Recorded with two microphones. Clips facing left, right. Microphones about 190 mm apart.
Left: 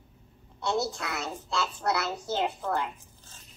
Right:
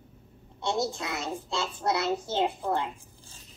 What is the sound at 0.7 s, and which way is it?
A child's voice, 20° right (ahead or behind).